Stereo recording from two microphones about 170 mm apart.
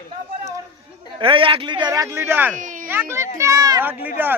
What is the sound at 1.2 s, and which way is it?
A man's voice, 30° right (ahead or behind).